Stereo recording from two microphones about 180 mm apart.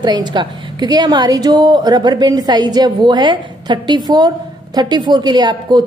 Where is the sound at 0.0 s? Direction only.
25° right (ahead or behind).